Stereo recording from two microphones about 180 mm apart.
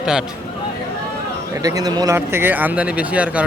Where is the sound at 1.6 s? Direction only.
20° right (ahead or behind).